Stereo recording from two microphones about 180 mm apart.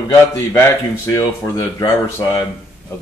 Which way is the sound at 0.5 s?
15° left (ahead or behind).